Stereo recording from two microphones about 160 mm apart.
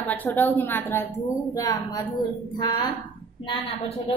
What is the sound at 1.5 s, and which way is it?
Speech, 25° left (ahead or behind).